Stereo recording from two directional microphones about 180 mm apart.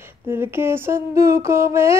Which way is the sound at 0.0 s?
15° right (ahead or behind).